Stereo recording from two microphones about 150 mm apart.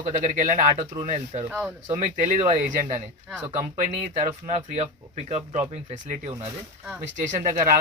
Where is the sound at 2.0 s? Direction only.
50° right (ahead or behind).